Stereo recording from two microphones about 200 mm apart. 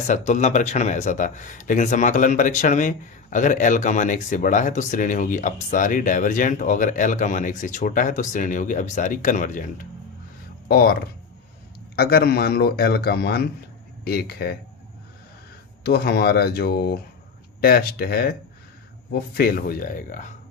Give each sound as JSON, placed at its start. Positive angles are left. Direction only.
{"t": 0.1, "sound": "speech", "side_deg": 35}
{"t": 11.9, "sound": "a man's voice", "side_deg": 50}
{"t": 15.8, "sound": "a man's voice", "side_deg": 50}